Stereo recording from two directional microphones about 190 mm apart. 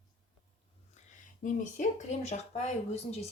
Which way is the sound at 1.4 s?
40° left (ahead or behind).